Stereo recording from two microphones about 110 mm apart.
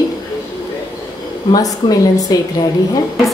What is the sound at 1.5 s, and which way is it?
Speech, 35° left (ahead or behind).